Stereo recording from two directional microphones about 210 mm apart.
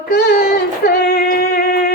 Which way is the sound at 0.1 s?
50° left (ahead or behind).